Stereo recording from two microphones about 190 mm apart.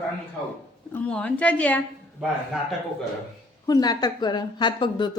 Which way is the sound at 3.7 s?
20° left (ahead or behind).